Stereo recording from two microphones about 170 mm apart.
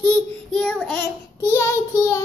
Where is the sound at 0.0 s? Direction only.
5° left (ahead or behind).